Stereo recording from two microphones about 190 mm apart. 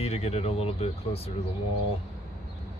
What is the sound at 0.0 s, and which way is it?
Speech, 30° left (ahead or behind).